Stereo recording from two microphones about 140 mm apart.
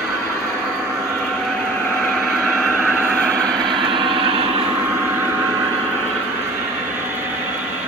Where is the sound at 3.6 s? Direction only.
35° right (ahead or behind).